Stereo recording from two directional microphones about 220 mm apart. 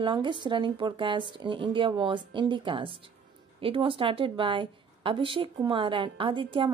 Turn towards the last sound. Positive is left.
turn(degrees=-25)  # may be behind; listen again after turning